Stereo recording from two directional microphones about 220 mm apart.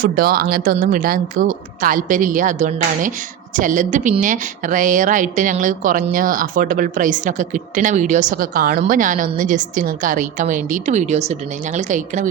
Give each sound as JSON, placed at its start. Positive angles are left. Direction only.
{"t": 0.0, "sound": "speech", "side_deg": -45}